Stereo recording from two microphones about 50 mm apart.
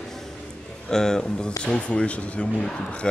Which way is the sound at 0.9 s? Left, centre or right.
Centre.